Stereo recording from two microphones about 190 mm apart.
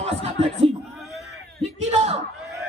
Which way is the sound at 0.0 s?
35° right (ahead or behind).